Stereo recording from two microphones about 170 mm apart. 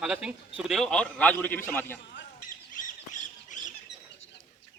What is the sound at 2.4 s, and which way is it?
Squawk, 50° left (ahead or behind).